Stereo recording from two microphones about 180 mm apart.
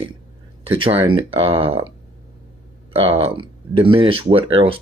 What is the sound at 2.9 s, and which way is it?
Speech, 30° right (ahead or behind).